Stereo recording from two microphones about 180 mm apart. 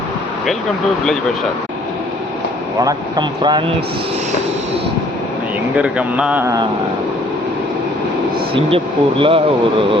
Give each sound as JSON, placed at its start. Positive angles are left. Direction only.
{"t": 2.8, "sound": "speech", "side_deg": -25}
{"t": 5.7, "sound": "a man's voice", "side_deg": -5}
{"t": 8.5, "sound": "speech", "side_deg": -30}